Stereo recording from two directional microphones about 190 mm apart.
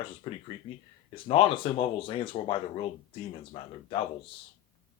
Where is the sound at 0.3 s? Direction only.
25° left (ahead or behind).